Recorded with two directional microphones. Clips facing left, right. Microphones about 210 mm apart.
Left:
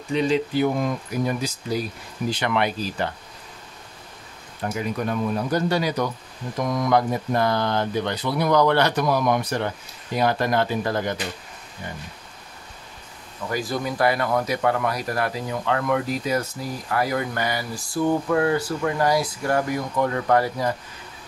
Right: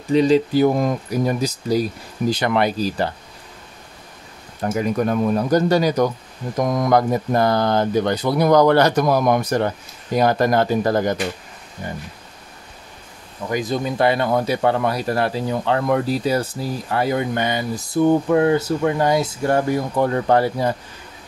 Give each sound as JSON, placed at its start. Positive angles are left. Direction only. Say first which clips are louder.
{"t": 0.1, "sound": "speech", "louder": "right 6 dB", "side_deg": -40}
{"t": 4.7, "sound": "speech", "louder": "right 6 dB", "side_deg": -45}
{"t": 13.5, "sound": "speech", "louder": "right 4 dB", "side_deg": -20}